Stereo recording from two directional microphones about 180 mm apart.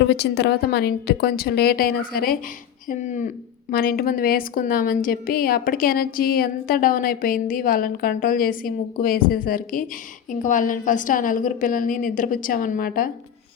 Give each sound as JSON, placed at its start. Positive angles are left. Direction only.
{"t": 0.0, "sound": "a woman's voice", "side_deg": 70}
{"t": 2.9, "sound": "a woman's voice", "side_deg": 45}